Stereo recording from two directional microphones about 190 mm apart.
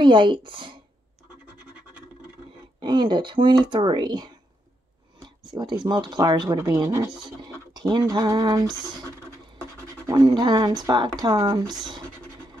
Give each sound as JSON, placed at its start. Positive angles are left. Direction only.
{"t": 0.0, "sound": "speech", "side_deg": -25}
{"t": 2.8, "sound": "speech", "side_deg": -25}
{"t": 10.0, "sound": "speech", "side_deg": -20}